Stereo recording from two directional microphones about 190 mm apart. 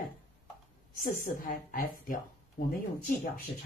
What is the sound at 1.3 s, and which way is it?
Speech, 45° left (ahead or behind).